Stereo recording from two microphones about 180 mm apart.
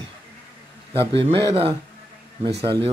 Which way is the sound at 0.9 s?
30° right (ahead or behind).